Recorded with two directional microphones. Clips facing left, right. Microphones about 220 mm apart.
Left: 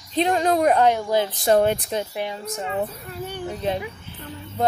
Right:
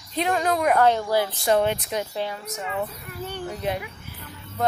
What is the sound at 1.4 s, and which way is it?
Speech, 40° left (ahead or behind).